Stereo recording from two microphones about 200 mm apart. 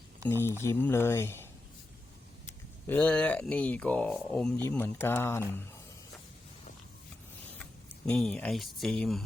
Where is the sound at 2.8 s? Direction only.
5° left (ahead or behind).